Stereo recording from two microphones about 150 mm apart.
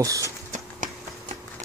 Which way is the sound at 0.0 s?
20° right (ahead or behind).